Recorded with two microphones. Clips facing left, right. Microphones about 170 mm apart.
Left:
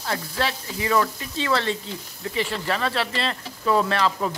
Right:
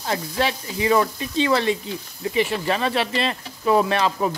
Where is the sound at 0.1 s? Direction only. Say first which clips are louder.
Right 3 dB; 20° right (ahead or behind).